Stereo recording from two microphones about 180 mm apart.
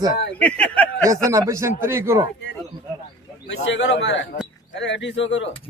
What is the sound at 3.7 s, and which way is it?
A man's voice, 75° left (ahead or behind).